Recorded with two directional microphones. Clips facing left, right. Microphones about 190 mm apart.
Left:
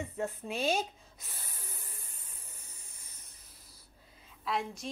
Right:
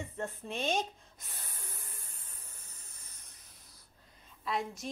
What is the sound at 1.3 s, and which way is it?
Spray, centre (ahead or behind).